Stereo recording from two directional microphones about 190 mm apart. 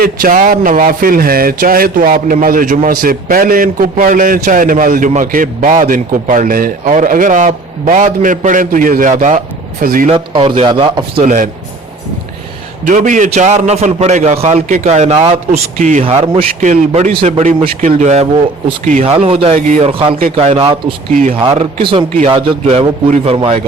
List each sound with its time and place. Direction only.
0.0 s a man's voice: 45° right (ahead or behind)
10.1 s speech: 30° right (ahead or behind)
11.2 s a man's voice: 40° right (ahead or behind)
12.8 s a man's voice: 40° right (ahead or behind)
16.0 s a man's voice: 30° right (ahead or behind)
19.5 s a man's voice: 45° right (ahead or behind)
19.8 s a man's voice: 30° right (ahead or behind)